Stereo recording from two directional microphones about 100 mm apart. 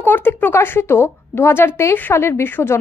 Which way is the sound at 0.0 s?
20° left (ahead or behind).